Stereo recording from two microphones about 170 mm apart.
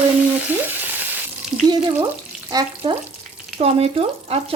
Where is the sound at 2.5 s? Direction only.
20° right (ahead or behind).